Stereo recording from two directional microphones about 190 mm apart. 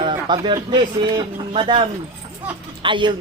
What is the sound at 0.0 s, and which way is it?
Speech, 25° right (ahead or behind).